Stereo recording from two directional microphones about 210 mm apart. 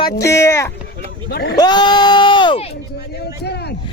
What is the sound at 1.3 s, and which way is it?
Speech, 50° left (ahead or behind).